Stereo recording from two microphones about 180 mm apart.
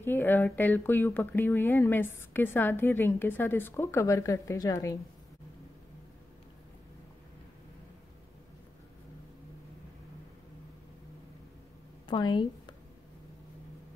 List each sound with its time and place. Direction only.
0.0 s speech: 10° left (ahead or behind)
12.1 s speech: 25° left (ahead or behind)